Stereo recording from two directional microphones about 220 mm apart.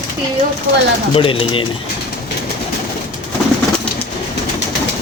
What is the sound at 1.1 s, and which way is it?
Speech, 25° left (ahead or behind).